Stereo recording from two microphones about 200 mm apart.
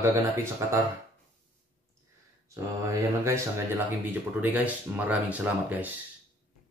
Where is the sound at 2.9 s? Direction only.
15° right (ahead or behind).